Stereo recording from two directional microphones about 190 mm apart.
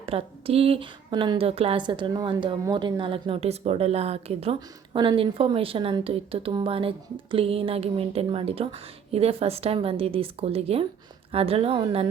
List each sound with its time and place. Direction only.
0.0 s a woman's voice: 30° right (ahead or behind)